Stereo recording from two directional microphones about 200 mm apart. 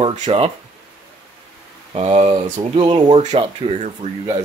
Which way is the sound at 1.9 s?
30° right (ahead or behind).